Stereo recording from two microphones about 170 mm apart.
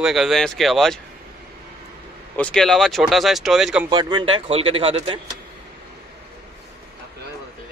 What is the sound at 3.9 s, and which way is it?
Speech, 25° right (ahead or behind).